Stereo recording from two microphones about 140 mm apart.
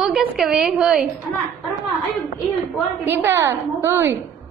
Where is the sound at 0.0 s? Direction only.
5° right (ahead or behind).